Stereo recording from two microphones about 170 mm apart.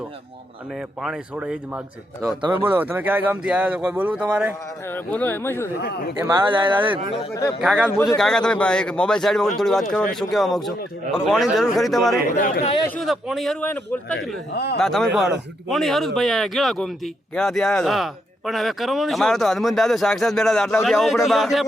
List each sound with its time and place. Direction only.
1.0 s speech: 5° right (ahead or behind)
2.2 s speech: 15° right (ahead or behind)
4.9 s speech: 10° left (ahead or behind)
5.8 s speech: 75° left (ahead or behind)
6.2 s speech: 25° right (ahead or behind)
7.6 s speech: centre (ahead or behind)
12.4 s speech: 50° left (ahead or behind)
13.0 s speech: centre (ahead or behind)
14.5 s speech: 75° left (ahead or behind)
14.8 s speech: centre (ahead or behind)